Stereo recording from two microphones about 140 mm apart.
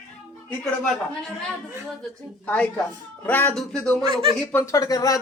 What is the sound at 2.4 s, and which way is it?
Speech, 10° left (ahead or behind).